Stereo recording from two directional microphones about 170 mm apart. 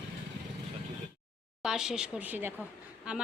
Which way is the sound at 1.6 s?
5° right (ahead or behind).